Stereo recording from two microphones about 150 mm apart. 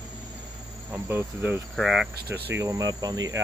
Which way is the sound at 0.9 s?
15° right (ahead or behind).